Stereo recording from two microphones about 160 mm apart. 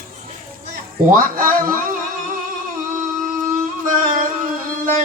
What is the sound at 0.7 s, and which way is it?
A man's voice, 60° right (ahead or behind).